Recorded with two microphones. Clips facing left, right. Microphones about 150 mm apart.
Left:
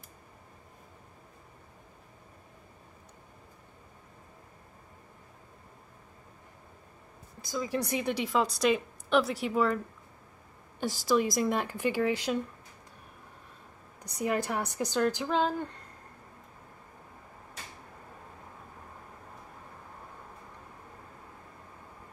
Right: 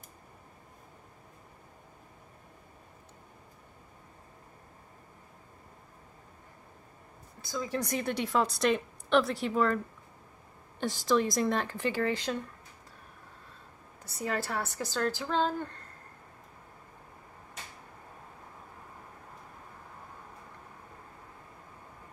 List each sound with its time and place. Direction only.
7.4 s a woman's voice: 15° left (ahead or behind)
11.1 s a woman's voice: 10° left (ahead or behind)
14.0 s a woman's voice: 15° left (ahead or behind)